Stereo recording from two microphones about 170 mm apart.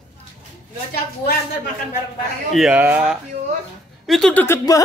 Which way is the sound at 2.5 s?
5° right (ahead or behind).